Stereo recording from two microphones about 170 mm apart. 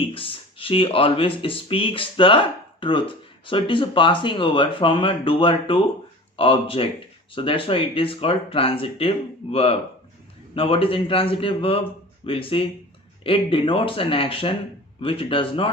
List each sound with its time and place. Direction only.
0.1 s speech: 30° left (ahead or behind)